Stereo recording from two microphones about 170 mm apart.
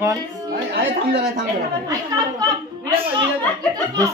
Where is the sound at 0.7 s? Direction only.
70° right (ahead or behind).